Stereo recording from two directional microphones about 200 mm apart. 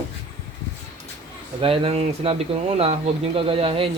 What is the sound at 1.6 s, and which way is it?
Speech, 30° right (ahead or behind).